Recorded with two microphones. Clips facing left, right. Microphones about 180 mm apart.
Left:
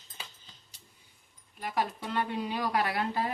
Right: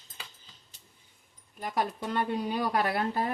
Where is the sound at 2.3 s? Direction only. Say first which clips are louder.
Right 3 dB; 40° right (ahead or behind).